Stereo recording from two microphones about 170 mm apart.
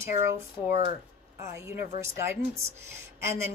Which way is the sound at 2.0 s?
15° right (ahead or behind).